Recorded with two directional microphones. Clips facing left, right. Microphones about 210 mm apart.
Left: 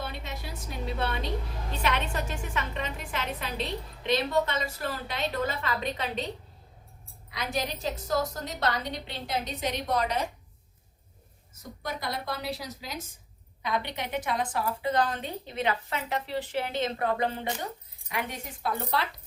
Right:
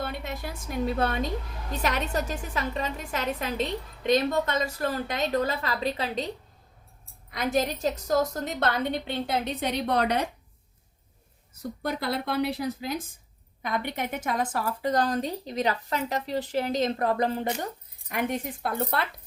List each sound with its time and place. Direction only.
0.0 s a sound: 50° right (ahead or behind)
0.9 s a woman's voice: 45° right (ahead or behind)
7.3 s a woman's voice: 50° right (ahead or behind)
11.8 s a woman's voice: 60° right (ahead or behind); by 17.7 s 40° right (ahead or behind)
18.1 s speech: 50° right (ahead or behind)